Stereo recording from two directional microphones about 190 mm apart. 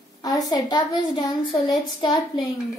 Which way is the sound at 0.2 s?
20° left (ahead or behind).